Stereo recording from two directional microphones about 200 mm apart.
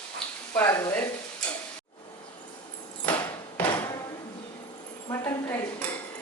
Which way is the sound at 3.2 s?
15° left (ahead or behind).